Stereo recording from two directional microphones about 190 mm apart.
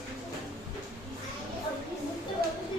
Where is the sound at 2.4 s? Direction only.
55° right (ahead or behind).